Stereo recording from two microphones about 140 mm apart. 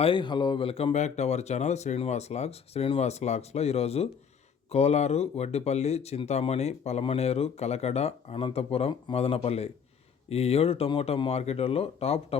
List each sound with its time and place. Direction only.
0.0 s speech: 35° left (ahead or behind)